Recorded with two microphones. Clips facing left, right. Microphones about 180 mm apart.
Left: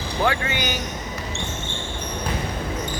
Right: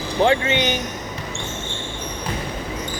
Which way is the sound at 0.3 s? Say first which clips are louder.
Right 5 dB; 25° right (ahead or behind).